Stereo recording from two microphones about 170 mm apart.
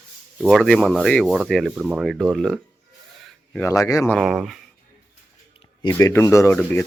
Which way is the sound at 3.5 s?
20° left (ahead or behind).